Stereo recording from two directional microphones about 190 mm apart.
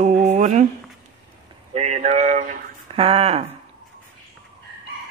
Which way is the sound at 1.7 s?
35° right (ahead or behind).